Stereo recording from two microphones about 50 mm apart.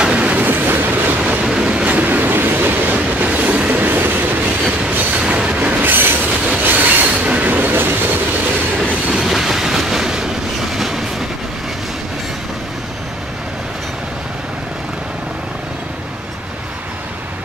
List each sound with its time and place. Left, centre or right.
0.0 s train: right
1.4 s train: centre; by 4.1 s right
5.1 s train: right
5.5 s train: right
9.1 s train: centre